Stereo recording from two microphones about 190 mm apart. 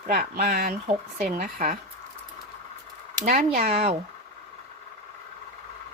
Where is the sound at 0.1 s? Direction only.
50° right (ahead or behind).